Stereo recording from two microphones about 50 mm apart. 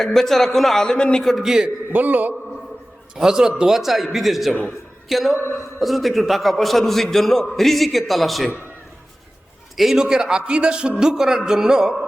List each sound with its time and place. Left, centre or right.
0.0 s a man's voice: centre
1.4 s speech: centre
1.9 s a man's voice: right
3.2 s a man's voice: centre
9.7 s a man's voice: centre